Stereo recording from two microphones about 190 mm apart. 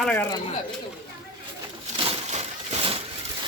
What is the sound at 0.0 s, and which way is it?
Speech, 5° left (ahead or behind).